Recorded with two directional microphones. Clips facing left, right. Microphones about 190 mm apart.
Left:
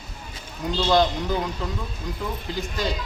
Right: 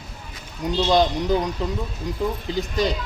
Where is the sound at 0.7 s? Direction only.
15° right (ahead or behind).